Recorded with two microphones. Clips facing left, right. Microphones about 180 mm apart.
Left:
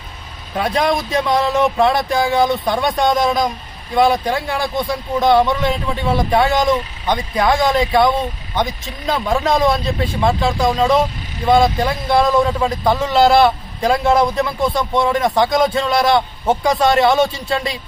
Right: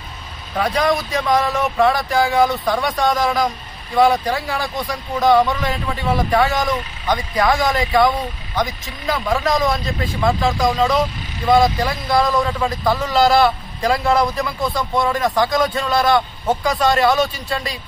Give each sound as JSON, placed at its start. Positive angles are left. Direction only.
{"t": 0.6, "sound": "speech", "side_deg": 25}